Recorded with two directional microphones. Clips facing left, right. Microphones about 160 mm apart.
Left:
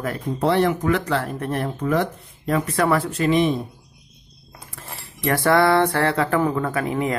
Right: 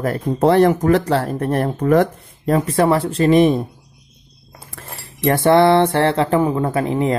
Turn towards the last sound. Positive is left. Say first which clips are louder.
# right 5 dB
turn(degrees=-25)  # may be behind; listen again after turning